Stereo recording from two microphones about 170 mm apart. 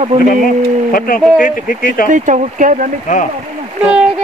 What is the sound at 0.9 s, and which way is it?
Speech, 55° left (ahead or behind).